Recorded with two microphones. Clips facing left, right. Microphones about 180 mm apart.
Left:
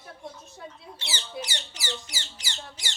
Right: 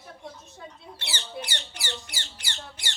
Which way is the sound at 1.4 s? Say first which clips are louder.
Left 1 dB; 60° right (ahead or behind).